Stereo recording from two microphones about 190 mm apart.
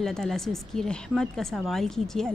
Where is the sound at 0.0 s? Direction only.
Centre (ahead or behind).